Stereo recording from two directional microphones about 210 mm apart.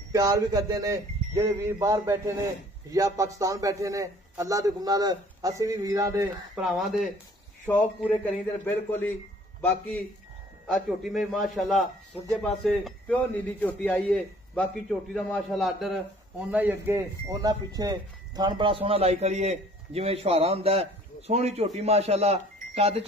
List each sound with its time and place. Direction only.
0.1 s a man's voice: 15° right (ahead or behind)
6.5 s a man's voice: centre (ahead or behind); by 23.0 s 30° right (ahead or behind)